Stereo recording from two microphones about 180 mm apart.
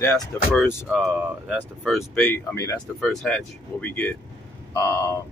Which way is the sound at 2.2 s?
15° left (ahead or behind).